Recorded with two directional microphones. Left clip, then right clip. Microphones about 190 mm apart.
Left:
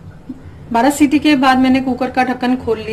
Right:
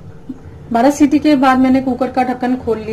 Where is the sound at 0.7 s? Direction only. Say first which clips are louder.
Right 1 dB; 25° right (ahead or behind).